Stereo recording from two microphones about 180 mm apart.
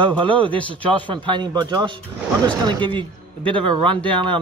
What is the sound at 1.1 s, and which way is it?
Speech, 25° right (ahead or behind).